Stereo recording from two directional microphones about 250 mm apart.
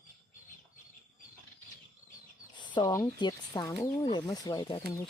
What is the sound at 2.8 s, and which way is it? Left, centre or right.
Speech, centre.